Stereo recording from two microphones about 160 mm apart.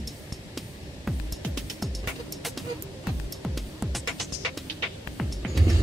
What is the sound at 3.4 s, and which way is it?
Music, centre (ahead or behind).